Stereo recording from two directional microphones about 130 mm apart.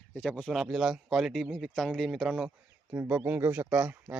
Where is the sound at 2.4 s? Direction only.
15° right (ahead or behind).